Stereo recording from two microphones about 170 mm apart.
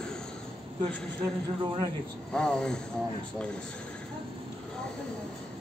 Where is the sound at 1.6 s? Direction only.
30° right (ahead or behind).